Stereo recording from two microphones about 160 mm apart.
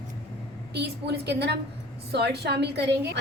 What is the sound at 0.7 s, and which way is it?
A woman's voice, 90° right.